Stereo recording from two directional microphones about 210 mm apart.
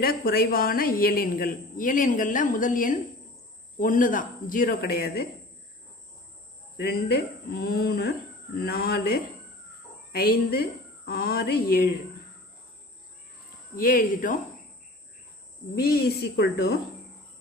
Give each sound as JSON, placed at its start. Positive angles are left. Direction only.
{"t": 0.0, "sound": "a woman's voice", "side_deg": 45}
{"t": 6.8, "sound": "a woman's voice", "side_deg": 50}
{"t": 13.7, "sound": "speech", "side_deg": 40}
{"t": 15.7, "sound": "a woman's voice", "side_deg": 50}